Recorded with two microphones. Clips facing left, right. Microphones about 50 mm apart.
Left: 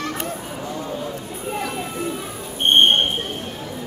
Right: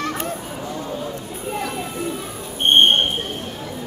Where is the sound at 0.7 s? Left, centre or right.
Centre.